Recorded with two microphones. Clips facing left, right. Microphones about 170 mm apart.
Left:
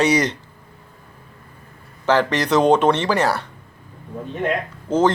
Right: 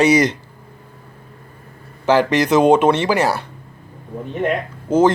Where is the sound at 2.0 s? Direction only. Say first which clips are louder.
Right 3 dB; 10° right (ahead or behind).